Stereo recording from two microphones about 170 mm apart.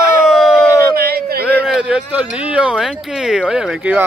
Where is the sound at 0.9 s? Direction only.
65° right (ahead or behind).